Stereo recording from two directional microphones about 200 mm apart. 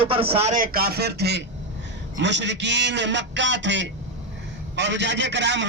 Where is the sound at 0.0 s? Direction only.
25° right (ahead or behind).